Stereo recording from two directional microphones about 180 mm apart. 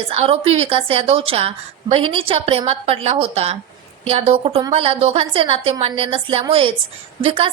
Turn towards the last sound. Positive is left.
turn(degrees=-30)  # may be behind; listen again after turning